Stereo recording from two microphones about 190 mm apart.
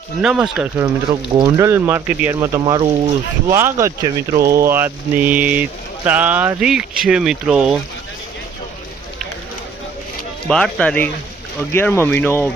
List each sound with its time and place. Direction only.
0.2 s speech: 5° right (ahead or behind)
1.1 s speech: 15° right (ahead or behind)
10.5 s speech: 5° left (ahead or behind)